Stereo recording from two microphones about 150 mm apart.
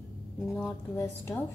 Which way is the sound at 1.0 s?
15° left (ahead or behind).